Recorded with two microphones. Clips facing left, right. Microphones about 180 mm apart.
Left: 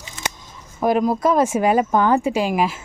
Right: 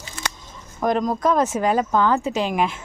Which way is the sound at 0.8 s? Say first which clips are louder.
Left 3 dB; 5° left (ahead or behind).